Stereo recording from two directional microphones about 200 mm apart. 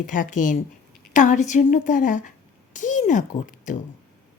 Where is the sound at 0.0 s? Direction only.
40° left (ahead or behind).